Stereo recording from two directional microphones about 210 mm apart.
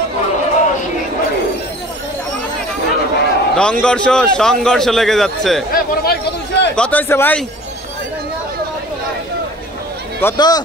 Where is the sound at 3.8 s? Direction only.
5° left (ahead or behind).